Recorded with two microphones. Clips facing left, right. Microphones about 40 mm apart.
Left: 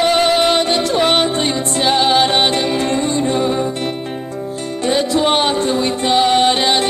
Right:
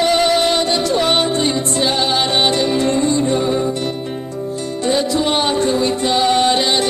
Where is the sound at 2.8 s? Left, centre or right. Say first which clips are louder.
Right 1 dB; left.